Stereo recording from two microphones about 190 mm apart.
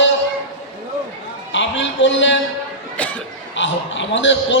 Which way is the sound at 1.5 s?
75° left (ahead or behind).